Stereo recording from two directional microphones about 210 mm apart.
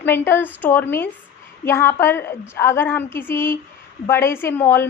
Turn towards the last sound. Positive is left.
turn(degrees=10)  # may be behind; listen again after turning